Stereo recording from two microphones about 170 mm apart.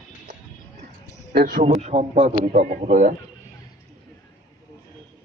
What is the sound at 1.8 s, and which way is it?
A man's voice, 35° right (ahead or behind).